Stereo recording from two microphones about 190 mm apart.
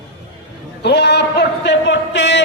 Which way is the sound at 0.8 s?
60° left (ahead or behind).